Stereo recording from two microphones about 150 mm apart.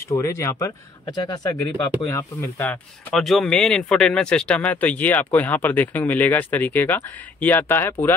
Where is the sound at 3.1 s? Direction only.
Centre (ahead or behind).